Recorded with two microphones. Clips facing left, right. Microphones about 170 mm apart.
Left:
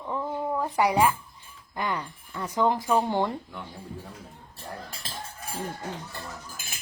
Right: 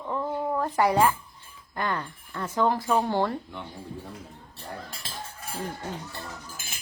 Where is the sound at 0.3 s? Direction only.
Centre (ahead or behind).